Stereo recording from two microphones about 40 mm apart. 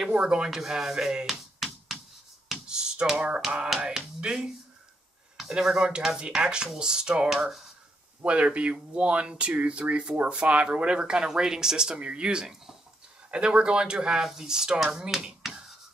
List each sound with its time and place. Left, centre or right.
0.2 s speech: right
0.5 s speech: centre
2.6 s a sound: right
3.2 s speech: right
8.2 s speech: right; by 12.0 s centre
12.0 s speech: right